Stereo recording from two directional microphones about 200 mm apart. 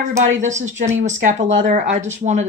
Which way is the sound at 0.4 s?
35° right (ahead or behind).